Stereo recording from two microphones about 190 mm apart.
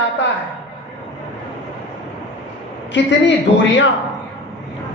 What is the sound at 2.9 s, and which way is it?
Speech, 70° left (ahead or behind).